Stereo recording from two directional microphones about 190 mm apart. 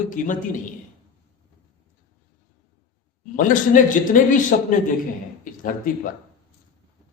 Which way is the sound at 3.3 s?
45° left (ahead or behind).